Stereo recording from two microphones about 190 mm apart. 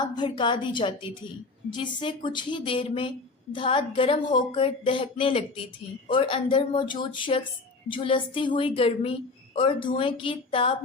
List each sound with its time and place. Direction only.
0.0 s speech: 25° left (ahead or behind)